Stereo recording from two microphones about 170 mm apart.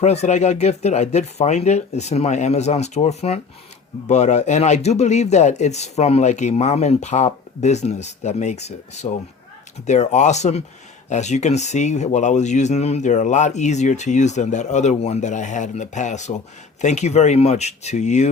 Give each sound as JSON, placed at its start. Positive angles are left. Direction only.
{"t": 0.0, "sound": "speech", "side_deg": 40}